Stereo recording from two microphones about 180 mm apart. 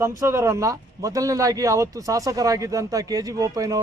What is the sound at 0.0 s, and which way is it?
Speech, 15° right (ahead or behind).